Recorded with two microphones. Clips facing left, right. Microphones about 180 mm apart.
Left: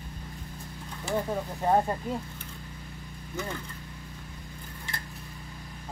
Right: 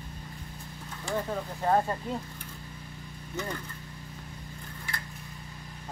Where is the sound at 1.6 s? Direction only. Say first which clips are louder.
Left 1 dB; 15° left (ahead or behind).